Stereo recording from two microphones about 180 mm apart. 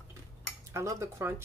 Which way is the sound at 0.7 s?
15° right (ahead or behind).